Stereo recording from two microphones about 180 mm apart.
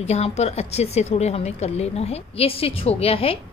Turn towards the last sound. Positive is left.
turn(degrees=30)  # may be behind; listen again after turning